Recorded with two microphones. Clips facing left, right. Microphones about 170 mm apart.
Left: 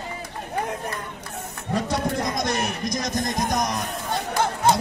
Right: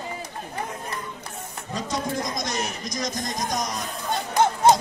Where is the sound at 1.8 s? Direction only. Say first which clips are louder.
Left 3 dB; 60° left (ahead or behind).